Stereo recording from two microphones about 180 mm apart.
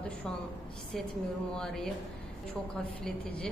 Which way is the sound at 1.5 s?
5° left (ahead or behind).